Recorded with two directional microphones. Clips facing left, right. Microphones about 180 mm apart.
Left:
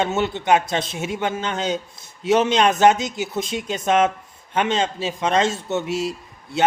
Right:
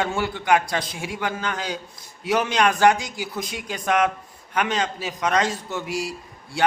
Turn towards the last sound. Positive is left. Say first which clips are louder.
# left 2 dB
turn(degrees=20)  # may be behind; listen again after turning